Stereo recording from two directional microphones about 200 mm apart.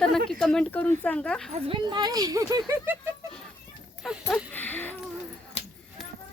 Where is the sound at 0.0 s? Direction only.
5° left (ahead or behind).